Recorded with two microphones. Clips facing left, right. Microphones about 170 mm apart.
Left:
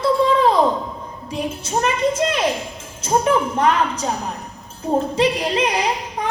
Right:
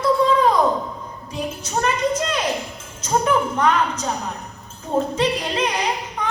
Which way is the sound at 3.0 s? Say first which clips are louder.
Left 2 dB; 30° left (ahead or behind).